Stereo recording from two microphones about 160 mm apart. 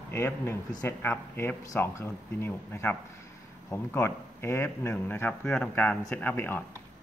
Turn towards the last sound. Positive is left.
turn(degrees=15)  # may be behind; listen again after turning